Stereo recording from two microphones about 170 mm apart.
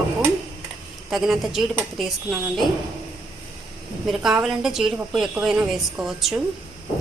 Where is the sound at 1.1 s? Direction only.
Centre (ahead or behind).